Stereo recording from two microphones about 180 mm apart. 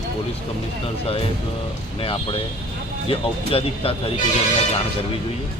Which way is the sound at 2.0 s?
30° left (ahead or behind).